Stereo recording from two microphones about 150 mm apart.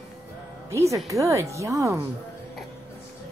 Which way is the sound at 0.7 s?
20° right (ahead or behind).